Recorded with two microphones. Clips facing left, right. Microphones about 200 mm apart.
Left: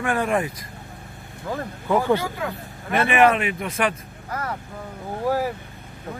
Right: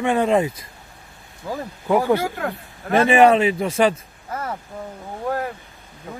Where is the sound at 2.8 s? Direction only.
35° right (ahead or behind).